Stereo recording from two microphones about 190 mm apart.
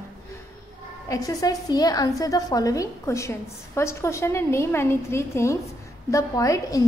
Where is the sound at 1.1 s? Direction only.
20° left (ahead or behind).